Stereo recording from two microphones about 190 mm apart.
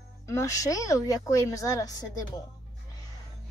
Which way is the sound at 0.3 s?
15° left (ahead or behind).